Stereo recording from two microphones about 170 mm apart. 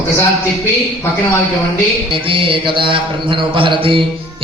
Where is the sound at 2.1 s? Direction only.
30° right (ahead or behind).